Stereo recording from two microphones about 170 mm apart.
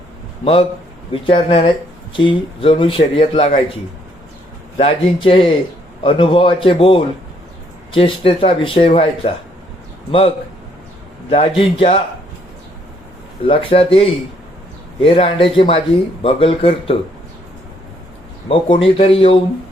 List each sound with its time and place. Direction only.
1.1 s speech: 35° left (ahead or behind)
4.8 s speech: 35° left (ahead or behind)
13.4 s speech: 30° left (ahead or behind)
18.4 s speech: 30° left (ahead or behind)